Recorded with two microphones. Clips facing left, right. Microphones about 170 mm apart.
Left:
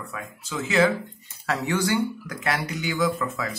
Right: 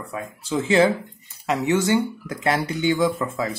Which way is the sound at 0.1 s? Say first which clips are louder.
Right 10 dB; 30° right (ahead or behind).